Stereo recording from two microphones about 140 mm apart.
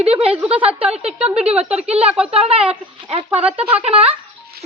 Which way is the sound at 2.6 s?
45° right (ahead or behind).